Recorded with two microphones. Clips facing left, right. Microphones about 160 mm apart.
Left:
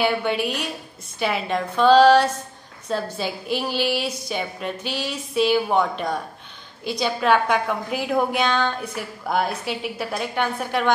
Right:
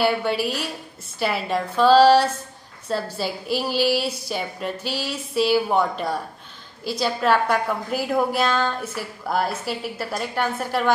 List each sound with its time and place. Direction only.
0.0 s a woman's voice: 5° right (ahead or behind)